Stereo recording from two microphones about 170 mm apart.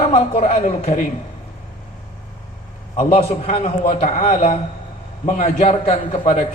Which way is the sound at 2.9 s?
35° left (ahead or behind).